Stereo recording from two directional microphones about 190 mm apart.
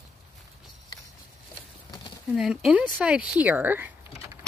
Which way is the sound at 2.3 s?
5° right (ahead or behind).